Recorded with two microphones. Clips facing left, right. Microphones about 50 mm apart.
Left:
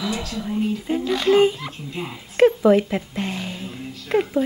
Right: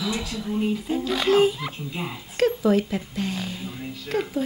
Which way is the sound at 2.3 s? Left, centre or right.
Left.